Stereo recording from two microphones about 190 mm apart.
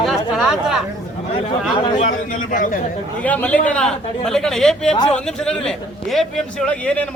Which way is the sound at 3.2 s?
5° left (ahead or behind).